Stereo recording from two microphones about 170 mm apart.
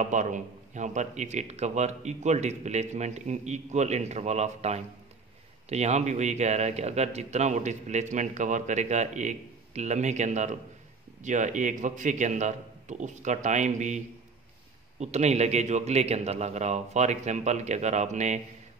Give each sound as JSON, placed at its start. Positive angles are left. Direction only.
{"t": 0.0, "sound": "a man's voice", "side_deg": -45}